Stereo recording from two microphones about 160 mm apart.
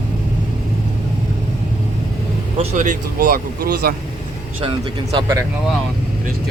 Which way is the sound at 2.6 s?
50° right (ahead or behind).